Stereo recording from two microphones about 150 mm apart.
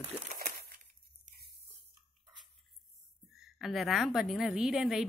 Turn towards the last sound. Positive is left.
turn(degrees=0)  # may be behind; listen again after turning